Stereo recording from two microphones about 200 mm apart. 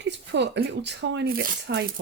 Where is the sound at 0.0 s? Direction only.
60° right (ahead or behind).